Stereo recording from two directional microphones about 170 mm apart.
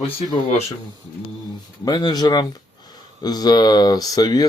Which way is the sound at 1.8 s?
25° left (ahead or behind).